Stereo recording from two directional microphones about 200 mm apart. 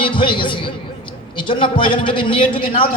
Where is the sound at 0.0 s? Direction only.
25° left (ahead or behind).